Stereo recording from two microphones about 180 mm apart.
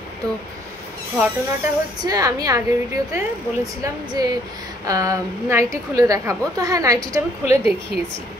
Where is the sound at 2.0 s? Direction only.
20° right (ahead or behind).